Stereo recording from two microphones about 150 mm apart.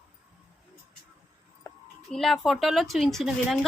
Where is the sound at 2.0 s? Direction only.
Centre (ahead or behind).